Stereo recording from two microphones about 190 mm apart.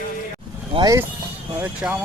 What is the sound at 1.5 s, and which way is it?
Speech, 10° right (ahead or behind).